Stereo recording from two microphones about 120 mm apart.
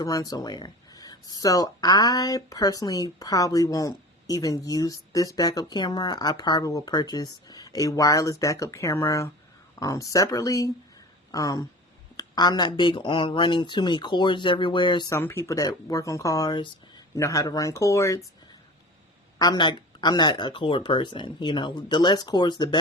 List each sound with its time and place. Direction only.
0.0 s speech: 30° left (ahead or behind)
15.1 s speech: 20° left (ahead or behind)
19.4 s speech: 35° left (ahead or behind)